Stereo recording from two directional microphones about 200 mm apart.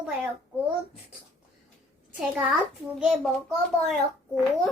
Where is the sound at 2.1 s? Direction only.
5° right (ahead or behind).